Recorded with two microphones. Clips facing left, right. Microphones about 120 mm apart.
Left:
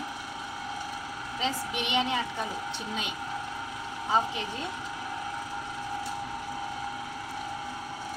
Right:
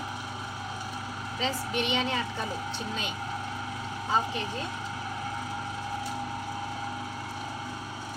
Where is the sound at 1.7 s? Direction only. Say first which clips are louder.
Even; 15° left (ahead or behind).